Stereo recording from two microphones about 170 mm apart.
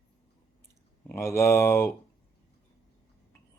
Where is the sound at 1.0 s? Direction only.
15° left (ahead or behind).